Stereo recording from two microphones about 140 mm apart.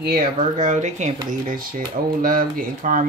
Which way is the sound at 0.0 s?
75° right (ahead or behind).